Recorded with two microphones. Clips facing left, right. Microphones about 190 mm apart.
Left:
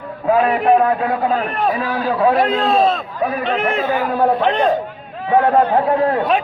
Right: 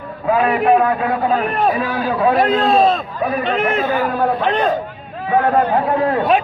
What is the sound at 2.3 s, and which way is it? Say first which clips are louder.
A man's voice: right 1 dB; centre (ahead or behind).